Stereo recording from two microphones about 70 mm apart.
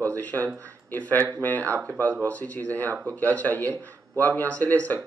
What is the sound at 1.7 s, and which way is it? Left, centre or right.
Speech, right.